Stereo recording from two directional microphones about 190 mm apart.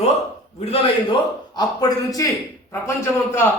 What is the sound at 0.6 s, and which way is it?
A man's voice, 30° left (ahead or behind).